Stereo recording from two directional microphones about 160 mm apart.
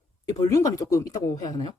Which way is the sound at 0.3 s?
20° left (ahead or behind).